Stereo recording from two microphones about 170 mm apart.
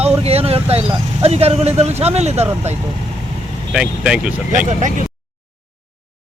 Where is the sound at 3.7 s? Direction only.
5° right (ahead or behind).